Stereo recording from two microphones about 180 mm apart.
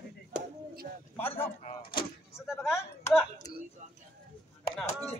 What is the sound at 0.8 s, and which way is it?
Speech, 45° right (ahead or behind).